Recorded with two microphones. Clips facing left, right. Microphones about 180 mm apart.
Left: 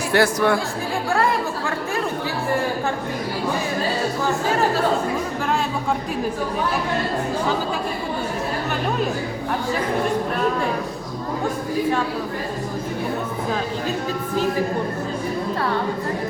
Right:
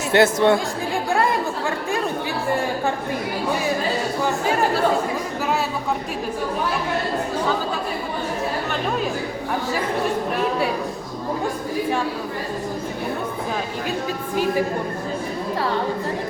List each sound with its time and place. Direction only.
0.1 s speech: 25° right (ahead or behind)